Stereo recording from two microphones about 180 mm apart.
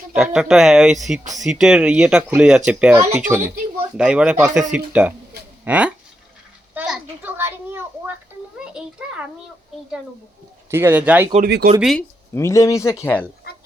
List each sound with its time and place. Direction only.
0.1 s speech: 5° right (ahead or behind)
6.7 s a sound: 5° right (ahead or behind)
10.7 s speech: 15° right (ahead or behind)
11.4 s speech: 60° right (ahead or behind)
11.8 s speech: centre (ahead or behind)
12.3 s speech: 15° left (ahead or behind)